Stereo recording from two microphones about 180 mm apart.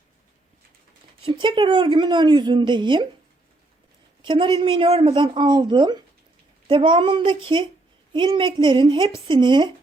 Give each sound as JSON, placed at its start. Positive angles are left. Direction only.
{"t": 1.2, "sound": "speech", "side_deg": -25}
{"t": 4.2, "sound": "speech", "side_deg": -25}